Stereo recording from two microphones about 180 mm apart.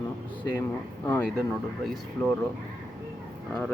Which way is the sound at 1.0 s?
10° left (ahead or behind).